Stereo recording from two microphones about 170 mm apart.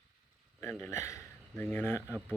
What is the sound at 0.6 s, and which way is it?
Speech, 10° left (ahead or behind).